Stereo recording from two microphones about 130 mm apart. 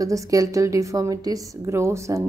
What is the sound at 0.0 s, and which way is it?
A woman's voice, 25° right (ahead or behind).